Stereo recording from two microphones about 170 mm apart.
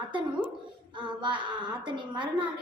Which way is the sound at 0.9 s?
30° right (ahead or behind).